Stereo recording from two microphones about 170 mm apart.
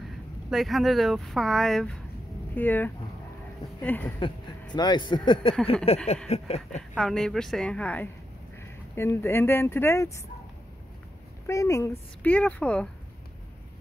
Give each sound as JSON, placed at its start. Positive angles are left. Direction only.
{"t": 0.5, "sound": "speech", "side_deg": 0}
{"t": 4.7, "sound": "speech", "side_deg": 25}
{"t": 5.9, "sound": "a sound", "side_deg": 40}
{"t": 7.0, "sound": "speech", "side_deg": 0}
{"t": 11.4, "sound": "speech", "side_deg": 20}
{"t": 12.2, "sound": "speech", "side_deg": 10}